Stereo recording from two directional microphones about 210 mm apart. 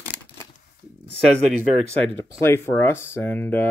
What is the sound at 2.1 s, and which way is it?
Speech, 15° left (ahead or behind).